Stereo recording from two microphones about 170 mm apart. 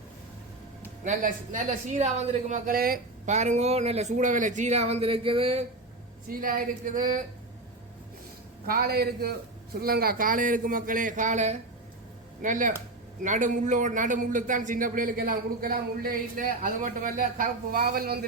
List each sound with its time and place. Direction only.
1.0 s a man's voice: 50° right (ahead or behind)
3.3 s speech: 45° right (ahead or behind)
6.2 s a man's voice: 55° right (ahead or behind)
8.6 s a man's voice: 65° right (ahead or behind)